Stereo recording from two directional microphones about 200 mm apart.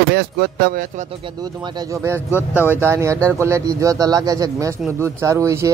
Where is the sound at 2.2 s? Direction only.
10° left (ahead or behind).